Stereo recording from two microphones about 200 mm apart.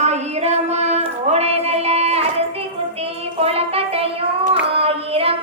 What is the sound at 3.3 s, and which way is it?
Music, 30° right (ahead or behind).